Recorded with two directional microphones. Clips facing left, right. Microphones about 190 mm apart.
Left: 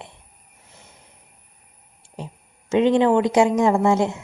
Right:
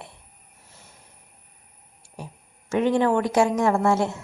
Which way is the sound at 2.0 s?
20° left (ahead or behind).